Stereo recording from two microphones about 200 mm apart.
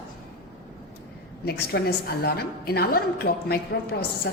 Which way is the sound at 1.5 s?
50° left (ahead or behind).